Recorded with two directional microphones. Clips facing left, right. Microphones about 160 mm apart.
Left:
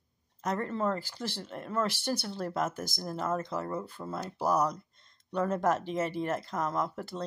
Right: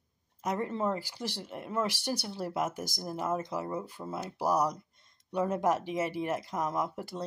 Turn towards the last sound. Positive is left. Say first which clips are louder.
# even
turn(degrees=-10)  # may be behind; listen again after turning